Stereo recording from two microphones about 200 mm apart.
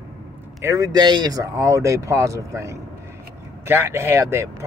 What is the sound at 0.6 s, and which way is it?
Speech, 15° right (ahead or behind).